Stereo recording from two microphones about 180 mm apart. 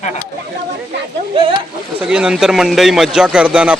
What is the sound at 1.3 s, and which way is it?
Speech, 30° right (ahead or behind).